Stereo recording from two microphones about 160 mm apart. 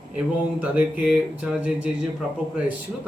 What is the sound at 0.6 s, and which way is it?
Speech, 10° right (ahead or behind).